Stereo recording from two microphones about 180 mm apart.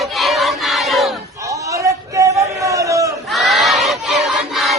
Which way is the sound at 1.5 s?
15° right (ahead or behind).